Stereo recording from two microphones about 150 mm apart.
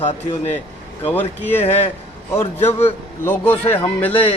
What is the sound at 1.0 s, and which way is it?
A man's voice, 15° left (ahead or behind).